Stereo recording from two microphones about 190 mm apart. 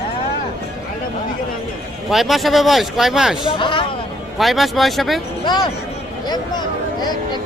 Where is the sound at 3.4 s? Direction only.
25° left (ahead or behind).